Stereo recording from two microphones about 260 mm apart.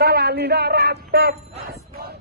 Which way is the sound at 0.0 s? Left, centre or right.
Right.